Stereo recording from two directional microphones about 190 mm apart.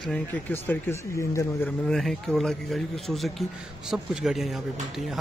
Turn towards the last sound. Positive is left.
turn(degrees=0)  # may be behind; listen again after turning